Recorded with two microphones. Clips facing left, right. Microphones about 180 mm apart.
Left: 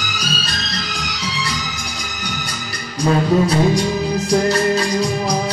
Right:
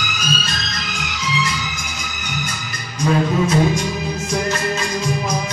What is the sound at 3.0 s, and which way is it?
Music, 35° left (ahead or behind).